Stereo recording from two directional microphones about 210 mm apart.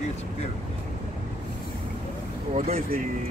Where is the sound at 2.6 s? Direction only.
40° right (ahead or behind).